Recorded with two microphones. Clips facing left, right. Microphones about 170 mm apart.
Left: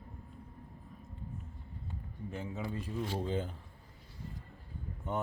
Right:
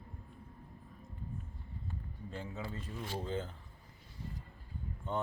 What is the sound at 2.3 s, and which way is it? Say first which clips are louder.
Speech: left 3 dB; 20° left (ahead or behind).